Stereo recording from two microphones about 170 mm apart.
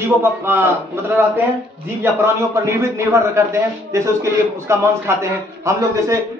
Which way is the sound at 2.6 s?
15° right (ahead or behind).